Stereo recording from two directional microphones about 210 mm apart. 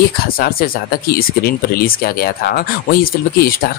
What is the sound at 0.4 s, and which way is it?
Speech, 45° left (ahead or behind).